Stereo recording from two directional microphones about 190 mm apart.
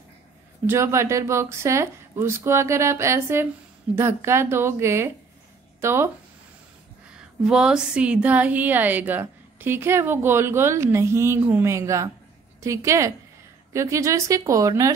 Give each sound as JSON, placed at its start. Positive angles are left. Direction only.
{"t": 0.7, "sound": "a woman's voice", "side_deg": -15}
{"t": 7.1, "sound": "a woman's voice", "side_deg": -5}